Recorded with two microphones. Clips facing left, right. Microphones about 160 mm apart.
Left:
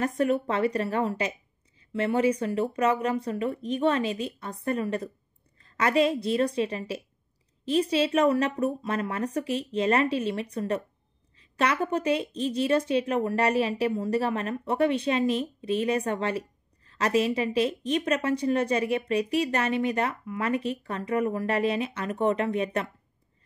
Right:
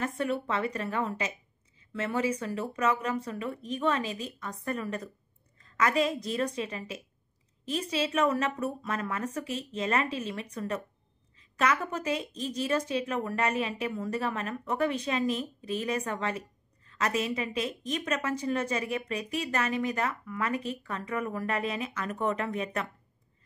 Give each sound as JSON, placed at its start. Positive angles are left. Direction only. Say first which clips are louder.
{"t": 0.0, "sound": "a woman's voice", "louder": "left 6 dB", "side_deg": 40}